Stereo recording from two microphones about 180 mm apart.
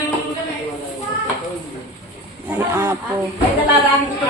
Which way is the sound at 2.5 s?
15° right (ahead or behind).